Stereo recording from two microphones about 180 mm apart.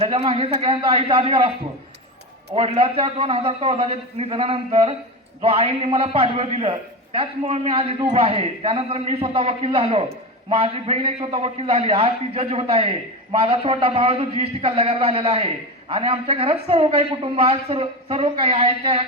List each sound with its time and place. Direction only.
0.0 s a man's voice: 35° right (ahead or behind)
2.5 s a man's voice: 35° right (ahead or behind)